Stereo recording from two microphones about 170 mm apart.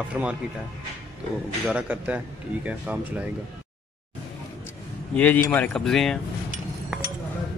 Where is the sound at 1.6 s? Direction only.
10° right (ahead or behind).